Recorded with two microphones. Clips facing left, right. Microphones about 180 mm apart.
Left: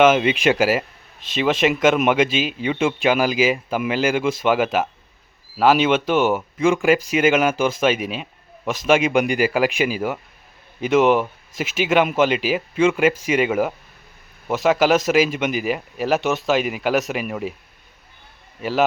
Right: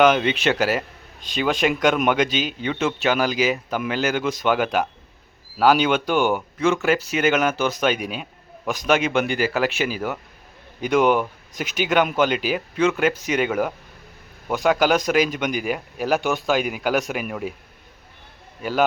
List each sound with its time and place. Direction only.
0.0 s speech: 5° left (ahead or behind)
18.6 s speech: centre (ahead or behind)